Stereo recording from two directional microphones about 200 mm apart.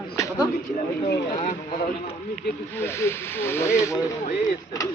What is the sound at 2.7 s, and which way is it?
Speech, 10° left (ahead or behind).